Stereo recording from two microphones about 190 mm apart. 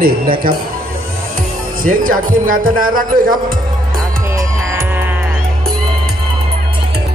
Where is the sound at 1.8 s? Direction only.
45° right (ahead or behind).